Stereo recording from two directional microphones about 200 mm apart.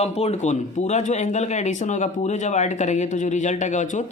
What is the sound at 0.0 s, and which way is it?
Speech, 30° left (ahead or behind).